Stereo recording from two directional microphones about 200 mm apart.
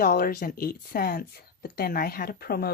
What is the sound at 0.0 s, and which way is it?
A woman's voice, 45° left (ahead or behind).